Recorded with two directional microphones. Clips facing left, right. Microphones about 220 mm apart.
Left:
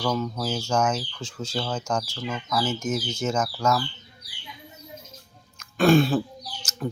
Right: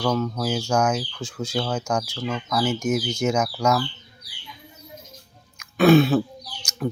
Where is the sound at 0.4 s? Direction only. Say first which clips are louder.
Right 2 dB; 10° right (ahead or behind).